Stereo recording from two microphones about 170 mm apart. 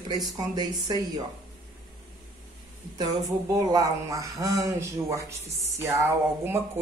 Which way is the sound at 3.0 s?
25° right (ahead or behind).